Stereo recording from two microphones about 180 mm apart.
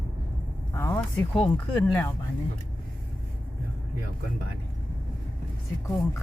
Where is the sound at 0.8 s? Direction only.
15° left (ahead or behind).